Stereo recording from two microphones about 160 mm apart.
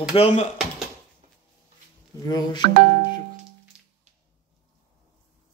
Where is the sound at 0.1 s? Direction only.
40° left (ahead or behind).